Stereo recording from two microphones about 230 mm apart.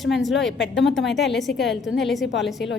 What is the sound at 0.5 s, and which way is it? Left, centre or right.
Speech, left.